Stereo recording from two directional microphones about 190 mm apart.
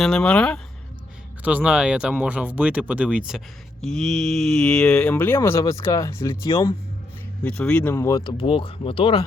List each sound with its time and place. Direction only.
0.0 s speech: 5° left (ahead or behind)
1.4 s speech: 10° right (ahead or behind); by 6.7 s 15° left (ahead or behind)
7.4 s speech: 5° left (ahead or behind); by 9.2 s 30° left (ahead or behind)